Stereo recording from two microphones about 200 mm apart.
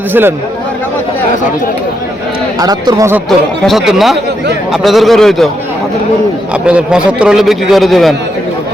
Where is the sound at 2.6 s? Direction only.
20° right (ahead or behind).